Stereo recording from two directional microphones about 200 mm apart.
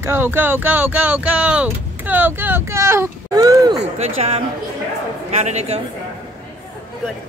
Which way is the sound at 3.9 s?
30° right (ahead or behind).